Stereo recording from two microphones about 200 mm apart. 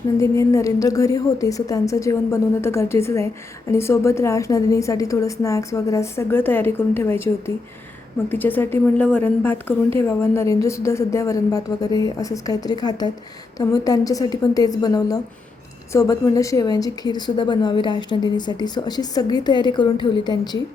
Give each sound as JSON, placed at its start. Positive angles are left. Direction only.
{"t": 0.2, "sound": "a woman's voice", "side_deg": 15}